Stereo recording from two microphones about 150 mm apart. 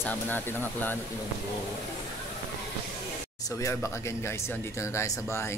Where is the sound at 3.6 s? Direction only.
20° left (ahead or behind).